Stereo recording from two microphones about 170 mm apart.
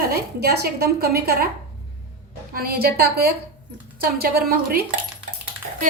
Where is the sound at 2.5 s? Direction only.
60° right (ahead or behind).